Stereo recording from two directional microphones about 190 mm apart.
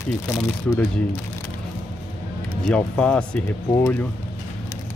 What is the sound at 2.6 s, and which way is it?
Speech, 5° left (ahead or behind).